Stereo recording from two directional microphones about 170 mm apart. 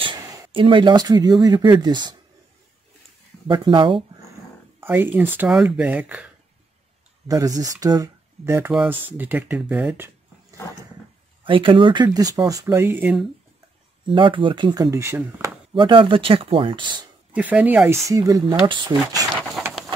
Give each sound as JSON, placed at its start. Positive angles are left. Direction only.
{"t": 0.0, "sound": "a sound", "side_deg": -25}
{"t": 0.5, "sound": "speech", "side_deg": -30}
{"t": 3.4, "sound": "speech", "side_deg": -30}
{"t": 4.7, "sound": "speech", "side_deg": -10}
{"t": 7.2, "sound": "speech", "side_deg": -20}
{"t": 11.4, "sound": "speech", "side_deg": -30}
{"t": 14.0, "sound": "speech", "side_deg": -30}
{"t": 15.7, "sound": "speech", "side_deg": -30}
{"t": 17.3, "sound": "speech", "side_deg": -10}